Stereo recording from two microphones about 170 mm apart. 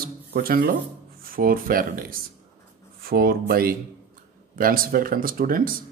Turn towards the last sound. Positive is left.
turn(degrees=-55)  # may be behind; listen again after turning